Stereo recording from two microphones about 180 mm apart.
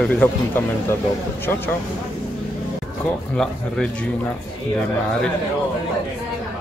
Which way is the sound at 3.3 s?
5° left (ahead or behind).